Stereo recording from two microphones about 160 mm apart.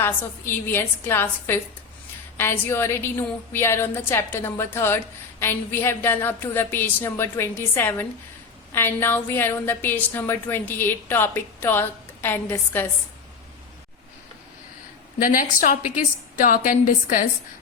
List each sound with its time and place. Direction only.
0.0 s a woman's voice: 15° left (ahead or behind)
15.2 s a woman's voice: 60° left (ahead or behind)